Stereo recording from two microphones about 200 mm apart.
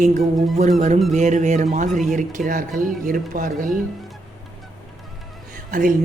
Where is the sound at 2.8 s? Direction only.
45° right (ahead or behind).